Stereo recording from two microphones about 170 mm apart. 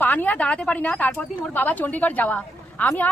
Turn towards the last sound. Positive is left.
turn(degrees=10)  # may be behind; listen again after turning